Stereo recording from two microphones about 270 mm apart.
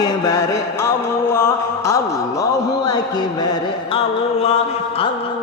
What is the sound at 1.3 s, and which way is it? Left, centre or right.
Music, centre.